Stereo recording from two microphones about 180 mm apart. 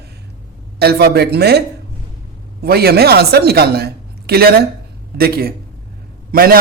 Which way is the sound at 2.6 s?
60° right (ahead or behind).